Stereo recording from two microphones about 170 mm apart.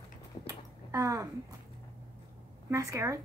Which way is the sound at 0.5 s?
20° right (ahead or behind).